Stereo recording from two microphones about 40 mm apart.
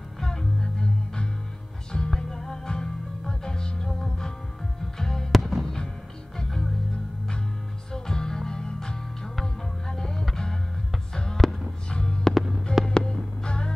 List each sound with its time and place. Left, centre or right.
0.2 s music: centre
5.4 s music: centre
6.3 s music: centre
7.9 s music: centre
11.4 s music: centre
11.9 s music: left